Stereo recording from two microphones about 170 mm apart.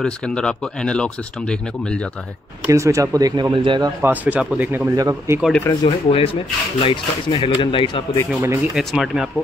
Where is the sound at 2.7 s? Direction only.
20° right (ahead or behind).